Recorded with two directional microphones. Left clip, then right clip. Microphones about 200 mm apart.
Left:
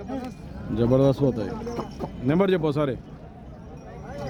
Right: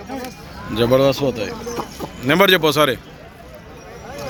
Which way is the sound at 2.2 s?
Centre (ahead or behind).